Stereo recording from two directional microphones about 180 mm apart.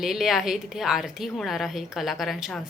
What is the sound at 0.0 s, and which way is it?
A woman's voice, centre (ahead or behind).